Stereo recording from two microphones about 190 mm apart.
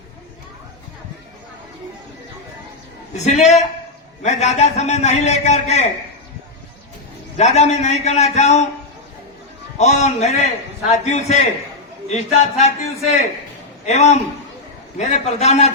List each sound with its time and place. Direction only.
3.2 s a man's voice: 35° left (ahead or behind)
7.3 s a man's voice: 35° left (ahead or behind)
9.7 s a man's voice: 35° left (ahead or behind)